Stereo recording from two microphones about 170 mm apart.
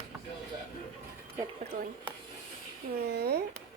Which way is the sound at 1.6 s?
65° right (ahead or behind).